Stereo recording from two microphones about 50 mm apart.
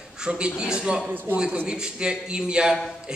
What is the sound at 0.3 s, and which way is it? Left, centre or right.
A man's voice, centre.